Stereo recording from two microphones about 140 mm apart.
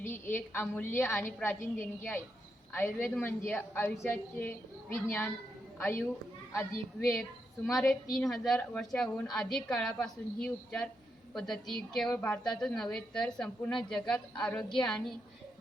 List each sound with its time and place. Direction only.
0.0 s a woman's voice: 15° left (ahead or behind)
7.2 s a woman's voice: centre (ahead or behind)